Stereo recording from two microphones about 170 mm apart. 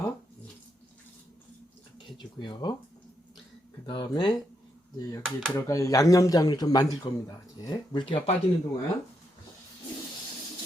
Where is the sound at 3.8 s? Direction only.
30° left (ahead or behind).